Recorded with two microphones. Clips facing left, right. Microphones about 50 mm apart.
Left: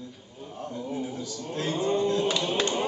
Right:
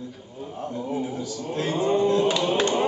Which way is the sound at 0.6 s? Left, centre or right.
Centre.